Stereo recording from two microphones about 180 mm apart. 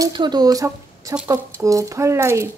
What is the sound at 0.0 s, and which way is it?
Speech, 25° right (ahead or behind).